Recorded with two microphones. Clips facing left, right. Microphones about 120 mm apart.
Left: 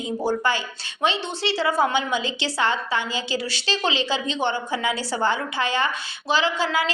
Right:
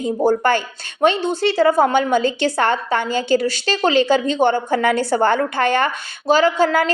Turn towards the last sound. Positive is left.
turn(degrees=-50)  # may be behind; listen again after turning